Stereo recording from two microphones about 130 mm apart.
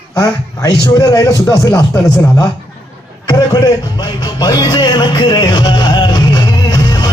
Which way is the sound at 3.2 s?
30° left (ahead or behind).